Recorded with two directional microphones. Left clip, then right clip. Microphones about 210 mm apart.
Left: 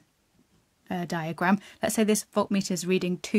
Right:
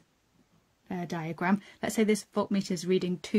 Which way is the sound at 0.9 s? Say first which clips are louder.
Left 4 dB; 40° left (ahead or behind).